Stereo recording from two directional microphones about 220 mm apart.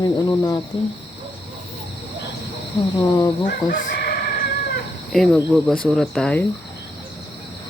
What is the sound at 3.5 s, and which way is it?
Speech, 45° left (ahead or behind).